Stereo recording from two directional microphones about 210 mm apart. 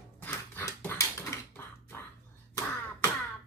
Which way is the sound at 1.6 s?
10° left (ahead or behind).